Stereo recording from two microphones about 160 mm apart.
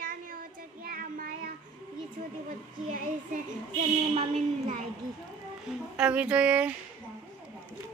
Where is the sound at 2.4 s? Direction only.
55° right (ahead or behind).